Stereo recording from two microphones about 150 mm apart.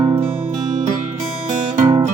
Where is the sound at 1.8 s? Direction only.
25° right (ahead or behind).